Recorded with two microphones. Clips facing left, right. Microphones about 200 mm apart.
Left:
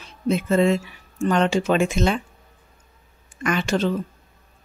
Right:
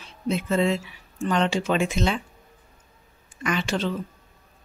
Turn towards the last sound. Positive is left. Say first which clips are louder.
# left 4 dB
turn(degrees=45)  # may be behind; listen again after turning